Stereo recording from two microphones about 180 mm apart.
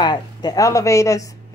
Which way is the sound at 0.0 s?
25° left (ahead or behind).